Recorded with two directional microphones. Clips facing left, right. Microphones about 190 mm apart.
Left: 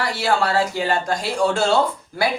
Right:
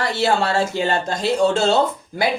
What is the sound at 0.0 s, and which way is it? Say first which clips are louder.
Speech: right 1 dB; 25° right (ahead or behind).